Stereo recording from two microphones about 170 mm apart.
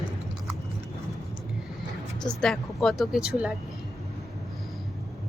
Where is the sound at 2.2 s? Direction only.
5° left (ahead or behind).